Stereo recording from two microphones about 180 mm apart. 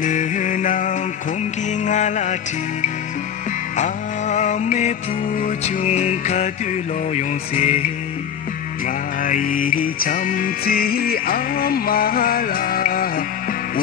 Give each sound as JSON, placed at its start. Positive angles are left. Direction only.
{"t": 0.0, "sound": "music", "side_deg": 45}
{"t": 3.7, "sound": "music", "side_deg": 40}
{"t": 8.8, "sound": "music", "side_deg": 50}